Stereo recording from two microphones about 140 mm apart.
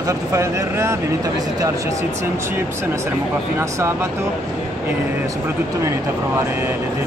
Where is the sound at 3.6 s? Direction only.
20° right (ahead or behind).